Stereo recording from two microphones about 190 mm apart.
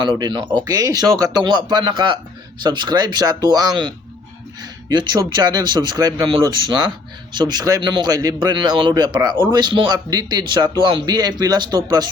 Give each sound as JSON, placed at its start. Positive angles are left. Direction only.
{"t": 0.0, "sound": "speech", "side_deg": -25}